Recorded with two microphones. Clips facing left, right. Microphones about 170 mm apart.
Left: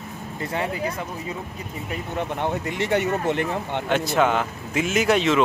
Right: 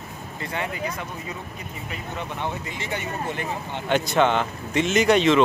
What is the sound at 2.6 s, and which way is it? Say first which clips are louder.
Speech: left 8 dB; 65° left (ahead or behind).